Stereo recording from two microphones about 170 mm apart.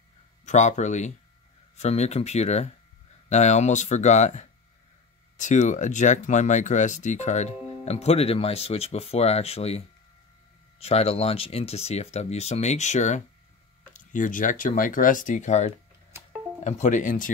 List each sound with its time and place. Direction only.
0.5 s speech: 45° left (ahead or behind)